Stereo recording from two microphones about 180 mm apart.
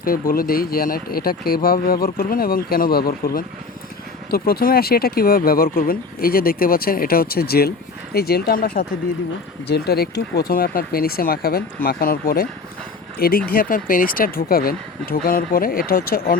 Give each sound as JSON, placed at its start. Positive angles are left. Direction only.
{"t": 0.0, "sound": "speech", "side_deg": 55}